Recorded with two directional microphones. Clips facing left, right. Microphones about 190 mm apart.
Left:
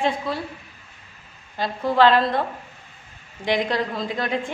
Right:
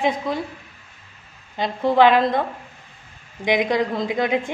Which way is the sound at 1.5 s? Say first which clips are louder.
Right 3 dB; 20° right (ahead or behind).